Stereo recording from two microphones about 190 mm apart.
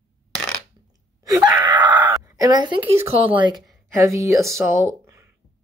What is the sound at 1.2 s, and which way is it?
Wail, 20° right (ahead or behind).